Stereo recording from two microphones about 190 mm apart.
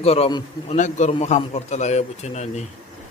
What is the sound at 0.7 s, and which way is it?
A man's voice, 40° left (ahead or behind).